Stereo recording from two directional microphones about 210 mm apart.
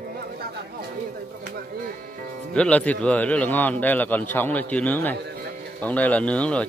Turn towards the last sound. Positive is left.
turn(degrees=5)  # may be behind; listen again after turning